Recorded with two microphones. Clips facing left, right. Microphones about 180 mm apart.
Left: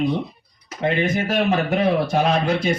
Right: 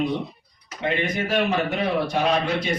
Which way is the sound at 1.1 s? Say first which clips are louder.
Left 2 dB; 50° left (ahead or behind).